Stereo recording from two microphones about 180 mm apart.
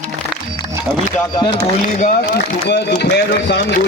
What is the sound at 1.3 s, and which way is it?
Speech, 25° left (ahead or behind).